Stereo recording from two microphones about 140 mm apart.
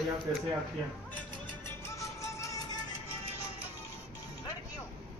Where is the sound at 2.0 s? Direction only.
20° left (ahead or behind).